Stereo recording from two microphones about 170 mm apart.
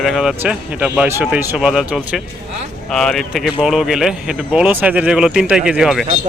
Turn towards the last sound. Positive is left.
turn(degrees=0)  # may be behind; listen again after turning